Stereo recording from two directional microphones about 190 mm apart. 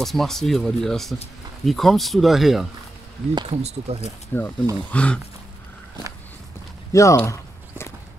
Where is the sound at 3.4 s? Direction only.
35° right (ahead or behind).